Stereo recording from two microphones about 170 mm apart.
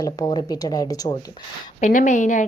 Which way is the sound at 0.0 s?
20° left (ahead or behind).